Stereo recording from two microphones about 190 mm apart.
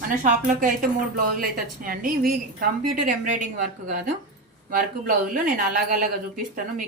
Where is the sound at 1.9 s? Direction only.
50° right (ahead or behind).